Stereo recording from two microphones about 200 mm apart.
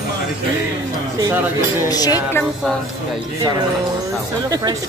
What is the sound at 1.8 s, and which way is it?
Speech, 20° left (ahead or behind).